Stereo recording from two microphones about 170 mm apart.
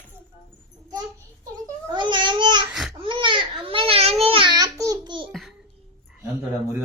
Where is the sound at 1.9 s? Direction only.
25° right (ahead or behind).